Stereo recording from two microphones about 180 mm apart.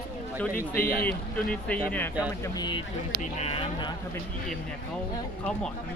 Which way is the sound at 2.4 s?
20° left (ahead or behind).